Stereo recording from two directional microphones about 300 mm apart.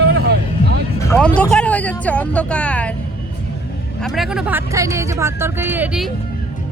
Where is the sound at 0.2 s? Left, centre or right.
Right.